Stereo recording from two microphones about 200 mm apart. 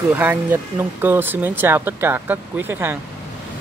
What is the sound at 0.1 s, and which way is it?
Speech, 10° right (ahead or behind).